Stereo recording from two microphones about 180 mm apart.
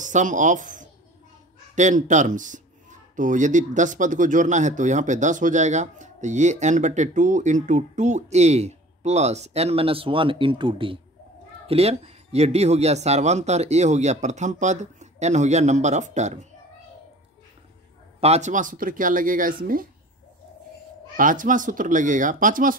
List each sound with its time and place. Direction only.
0.0 s speech: 45° right (ahead or behind)
18.2 s speech: 40° right (ahead or behind)
21.2 s speech: 50° right (ahead or behind)